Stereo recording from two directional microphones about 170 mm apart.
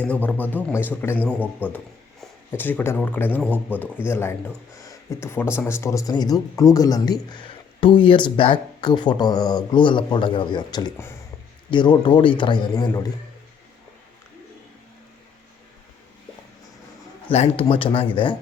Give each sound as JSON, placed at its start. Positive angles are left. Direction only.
{"t": 0.0, "sound": "speech", "side_deg": 10}
{"t": 17.2, "sound": "speech", "side_deg": 35}